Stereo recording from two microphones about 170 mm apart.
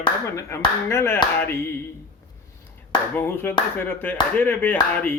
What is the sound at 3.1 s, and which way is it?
Mantra, 10° left (ahead or behind).